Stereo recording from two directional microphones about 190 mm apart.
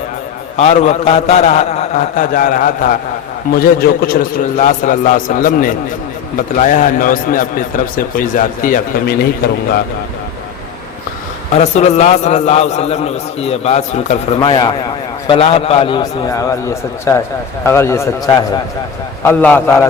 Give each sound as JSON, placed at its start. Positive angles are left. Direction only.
{"t": 0.5, "sound": "a man's voice", "side_deg": 35}
{"t": 4.5, "sound": "a man's voice", "side_deg": 40}
{"t": 11.5, "sound": "a man's voice", "side_deg": 35}
{"t": 19.2, "sound": "a man's voice", "side_deg": 10}